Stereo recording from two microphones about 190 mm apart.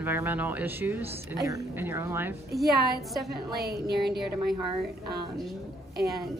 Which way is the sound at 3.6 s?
55° right (ahead or behind).